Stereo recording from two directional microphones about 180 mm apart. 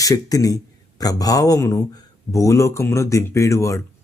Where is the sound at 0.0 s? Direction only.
20° left (ahead or behind).